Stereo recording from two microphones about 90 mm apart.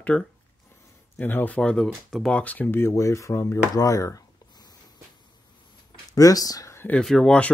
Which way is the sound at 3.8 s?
35° left (ahead or behind).